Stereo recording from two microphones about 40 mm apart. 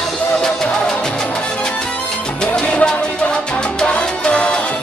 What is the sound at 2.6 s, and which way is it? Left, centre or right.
Music, left.